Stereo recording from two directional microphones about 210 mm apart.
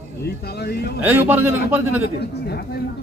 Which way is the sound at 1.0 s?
10° right (ahead or behind).